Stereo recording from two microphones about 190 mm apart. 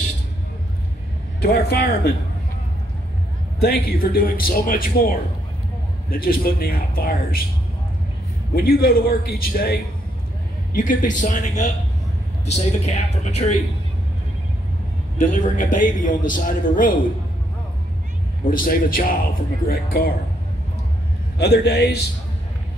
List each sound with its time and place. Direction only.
1.4 s a man's voice: 55° left (ahead or behind)
3.5 s a man's voice: 50° left (ahead or behind)
8.5 s a man's voice: 50° left (ahead or behind)
15.1 s a man's voice: 45° left (ahead or behind)
18.4 s a man's voice: 45° left (ahead or behind)
21.4 s a man's voice: 60° left (ahead or behind)